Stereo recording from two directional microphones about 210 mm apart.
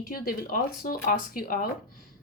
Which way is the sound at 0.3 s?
40° left (ahead or behind).